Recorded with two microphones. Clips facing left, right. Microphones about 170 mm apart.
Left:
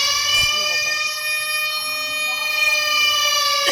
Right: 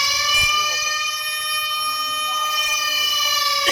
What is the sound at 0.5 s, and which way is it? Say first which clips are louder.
Siren: even; 70° left (ahead or behind).